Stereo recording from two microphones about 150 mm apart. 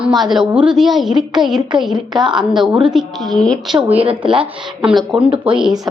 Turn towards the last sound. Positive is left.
turn(degrees=-5)  # may be behind; listen again after turning